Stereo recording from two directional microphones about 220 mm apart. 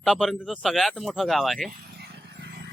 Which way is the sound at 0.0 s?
Centre (ahead or behind).